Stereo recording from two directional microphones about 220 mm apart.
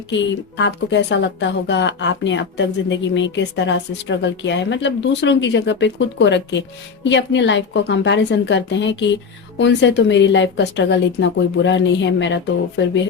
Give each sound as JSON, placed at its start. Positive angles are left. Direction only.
{"t": 0.1, "sound": "speech", "side_deg": 55}